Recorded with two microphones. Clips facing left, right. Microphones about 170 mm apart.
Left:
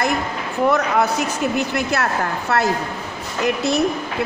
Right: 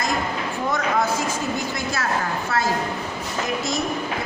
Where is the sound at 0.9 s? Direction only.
65° left (ahead or behind).